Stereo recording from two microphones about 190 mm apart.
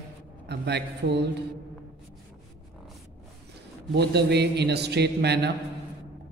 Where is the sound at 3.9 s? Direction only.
60° right (ahead or behind).